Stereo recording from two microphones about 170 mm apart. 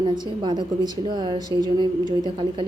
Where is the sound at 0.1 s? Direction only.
25° right (ahead or behind).